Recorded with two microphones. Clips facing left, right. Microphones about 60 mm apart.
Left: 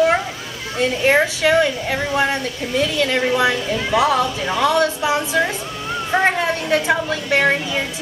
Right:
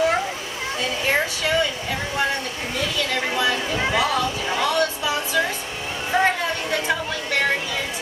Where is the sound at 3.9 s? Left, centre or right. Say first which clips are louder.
Left 8 dB; left.